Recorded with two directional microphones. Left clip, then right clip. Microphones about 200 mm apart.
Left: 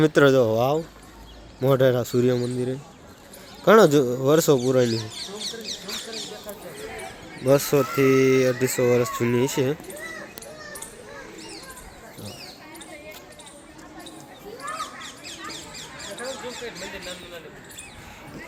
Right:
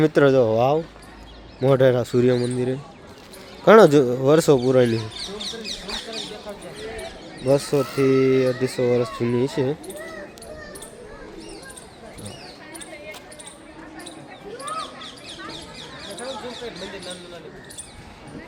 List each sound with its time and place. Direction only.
0.0 s speech: 10° left (ahead or behind)
5.4 s mouse: 15° right (ahead or behind)
7.4 s speech: 10° left (ahead or behind)